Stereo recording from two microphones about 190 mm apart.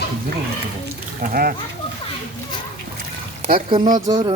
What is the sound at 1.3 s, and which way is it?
Speech, 50° right (ahead or behind).